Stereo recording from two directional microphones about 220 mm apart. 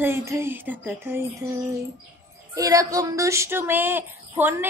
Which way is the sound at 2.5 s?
15° right (ahead or behind).